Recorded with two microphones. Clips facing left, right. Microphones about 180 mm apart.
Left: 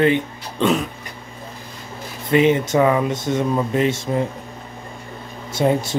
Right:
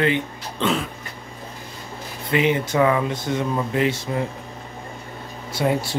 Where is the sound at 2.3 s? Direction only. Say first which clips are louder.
Left 5 dB; 20° left (ahead or behind).